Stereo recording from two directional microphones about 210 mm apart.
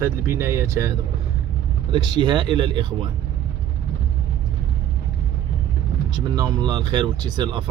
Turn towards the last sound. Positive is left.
turn(degrees=-20)  # may be behind; listen again after turning